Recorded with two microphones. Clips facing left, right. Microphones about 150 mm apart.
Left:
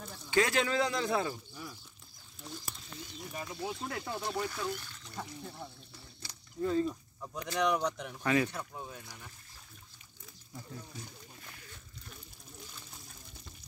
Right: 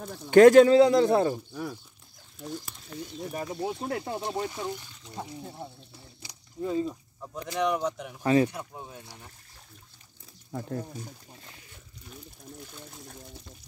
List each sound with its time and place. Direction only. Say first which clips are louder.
0.3 s speech: right 16 dB; 50° right (ahead or behind)
0.7 s a man's voice: right 13 dB; 30° right (ahead or behind)
1.5 s speech: right 11 dB; 70° right (ahead or behind)
2.9 s speech: right 11 dB; 50° right (ahead or behind)
3.4 s speech: right 6 dB; 30° right (ahead or behind); by 8.2 s 5° right (ahead or behind)
8.2 s a man's voice: right 7 dB; 30° right (ahead or behind)
8.5 s speech: right 2 dB; 20° right (ahead or behind)
10.5 s speech: right 12 dB; 60° right (ahead or behind)